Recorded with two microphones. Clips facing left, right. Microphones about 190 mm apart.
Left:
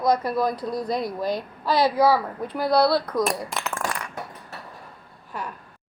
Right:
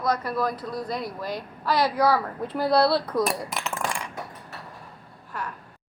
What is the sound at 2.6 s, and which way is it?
Speech, 5° right (ahead or behind).